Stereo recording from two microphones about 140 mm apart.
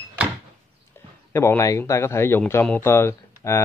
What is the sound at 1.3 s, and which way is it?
A man's voice, 20° left (ahead or behind).